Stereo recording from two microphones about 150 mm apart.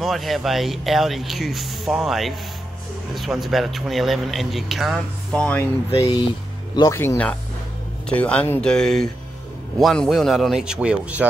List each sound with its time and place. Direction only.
0.0 s speech: centre (ahead or behind)
6.7 s speech: 25° left (ahead or behind)
7.0 s speech: 10° left (ahead or behind); by 11.2 s 10° right (ahead or behind)